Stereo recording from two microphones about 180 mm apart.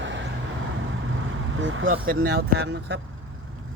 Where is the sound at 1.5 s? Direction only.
90° right.